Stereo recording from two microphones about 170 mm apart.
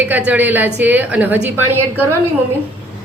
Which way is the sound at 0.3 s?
10° right (ahead or behind).